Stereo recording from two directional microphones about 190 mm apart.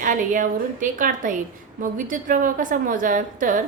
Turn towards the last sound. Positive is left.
turn(degrees=-45)  # may be behind; listen again after turning